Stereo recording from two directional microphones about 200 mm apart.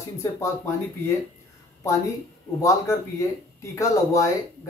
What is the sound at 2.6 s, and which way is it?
Speech, 15° left (ahead or behind).